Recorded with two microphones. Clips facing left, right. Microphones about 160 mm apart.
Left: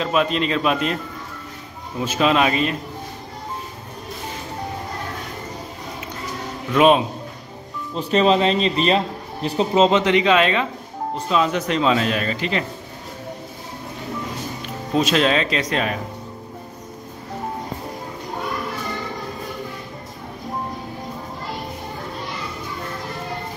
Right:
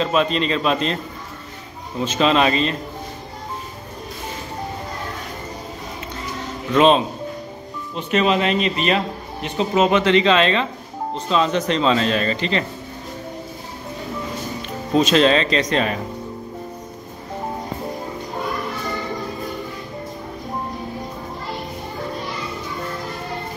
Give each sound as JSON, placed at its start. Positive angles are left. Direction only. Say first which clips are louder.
{"t": 0.0, "sound": "speech", "louder": "right 1 dB", "side_deg": 5}
{"t": 2.0, "sound": "speech", "louder": "right 1 dB", "side_deg": 5}
{"t": 6.7, "sound": "speech", "louder": "even", "side_deg": 10}
{"t": 7.9, "sound": "speech", "louder": "left 2 dB", "side_deg": 35}
{"t": 9.8, "sound": "speech", "louder": "right 1 dB", "side_deg": 20}
{"t": 15.0, "sound": "speech", "louder": "right 3 dB", "side_deg": 5}